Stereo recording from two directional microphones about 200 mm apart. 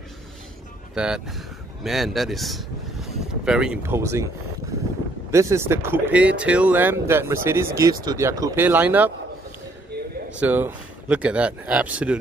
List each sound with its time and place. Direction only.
0.9 s speech: 5° right (ahead or behind)
5.3 s speech: 15° right (ahead or behind)
9.9 s a sound: 55° right (ahead or behind)
10.4 s speech: 10° right (ahead or behind)